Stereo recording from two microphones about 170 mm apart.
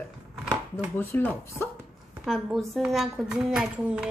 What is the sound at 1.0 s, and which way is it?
Speech, 10° left (ahead or behind).